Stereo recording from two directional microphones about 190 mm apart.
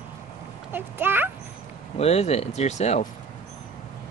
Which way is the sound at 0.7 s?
10° right (ahead or behind).